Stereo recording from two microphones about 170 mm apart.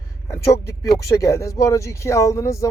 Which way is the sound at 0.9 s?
20° left (ahead or behind).